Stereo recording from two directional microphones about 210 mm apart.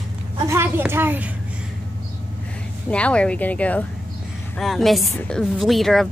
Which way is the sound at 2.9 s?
5° left (ahead or behind).